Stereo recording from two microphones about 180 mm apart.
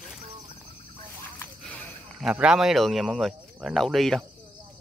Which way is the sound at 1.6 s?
5° left (ahead or behind).